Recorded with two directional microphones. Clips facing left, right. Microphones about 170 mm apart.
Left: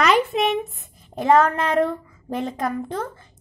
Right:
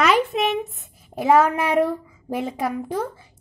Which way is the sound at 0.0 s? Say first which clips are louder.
Even; centre (ahead or behind).